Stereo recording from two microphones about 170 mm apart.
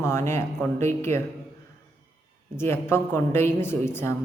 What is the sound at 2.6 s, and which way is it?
A woman's voice, 15° left (ahead or behind).